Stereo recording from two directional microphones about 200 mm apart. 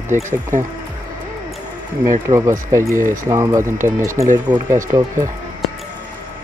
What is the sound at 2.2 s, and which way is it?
Speech, 15° right (ahead or behind).